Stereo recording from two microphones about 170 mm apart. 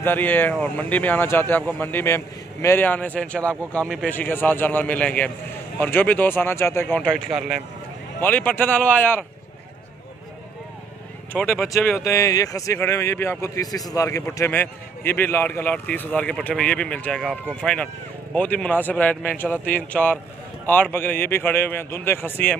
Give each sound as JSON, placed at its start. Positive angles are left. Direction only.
{"t": 0.0, "sound": "speech", "side_deg": 10}
{"t": 11.3, "sound": "speech", "side_deg": 5}
{"t": 11.7, "sound": "speech", "side_deg": 15}